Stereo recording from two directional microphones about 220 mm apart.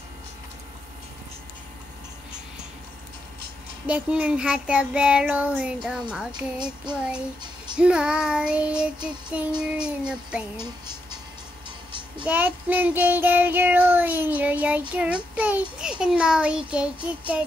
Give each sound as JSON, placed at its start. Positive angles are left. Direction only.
{"t": 3.8, "sound": "child singing", "side_deg": -5}
{"t": 6.6, "sound": "child singing", "side_deg": -20}
{"t": 7.7, "sound": "child singing", "side_deg": -5}
{"t": 10.6, "sound": "a sound", "side_deg": -20}
{"t": 12.3, "sound": "child singing", "side_deg": -5}